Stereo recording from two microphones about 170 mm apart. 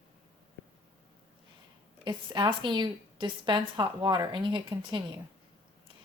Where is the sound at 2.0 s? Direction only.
30° right (ahead or behind).